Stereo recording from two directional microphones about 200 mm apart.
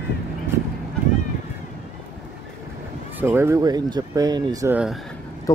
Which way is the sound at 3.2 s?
10° right (ahead or behind).